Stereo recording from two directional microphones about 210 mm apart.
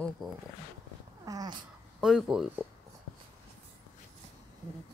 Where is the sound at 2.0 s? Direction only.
Centre (ahead or behind).